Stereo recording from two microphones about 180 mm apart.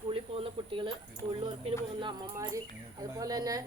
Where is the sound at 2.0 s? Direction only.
25° right (ahead or behind).